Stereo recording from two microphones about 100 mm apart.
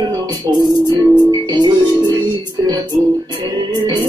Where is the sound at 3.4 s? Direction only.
40° right (ahead or behind).